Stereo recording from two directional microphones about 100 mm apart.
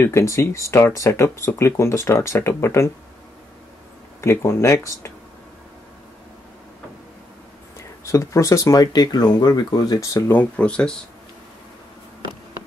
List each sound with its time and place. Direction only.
0.0 s speech: 30° left (ahead or behind)
4.2 s speech: 25° left (ahead or behind)
8.0 s speech: 30° left (ahead or behind)
10.3 s speech: 10° left (ahead or behind)